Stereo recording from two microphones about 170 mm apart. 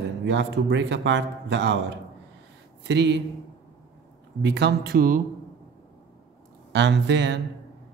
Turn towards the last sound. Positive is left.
turn(degrees=-90)